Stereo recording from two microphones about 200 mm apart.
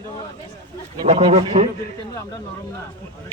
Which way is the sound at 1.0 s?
35° right (ahead or behind).